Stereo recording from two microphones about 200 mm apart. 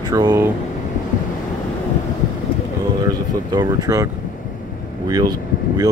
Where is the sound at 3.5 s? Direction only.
20° right (ahead or behind).